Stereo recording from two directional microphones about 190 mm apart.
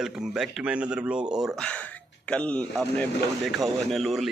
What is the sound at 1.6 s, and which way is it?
Speech, 5° left (ahead or behind).